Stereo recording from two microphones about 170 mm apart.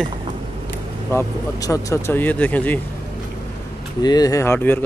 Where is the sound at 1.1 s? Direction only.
20° left (ahead or behind).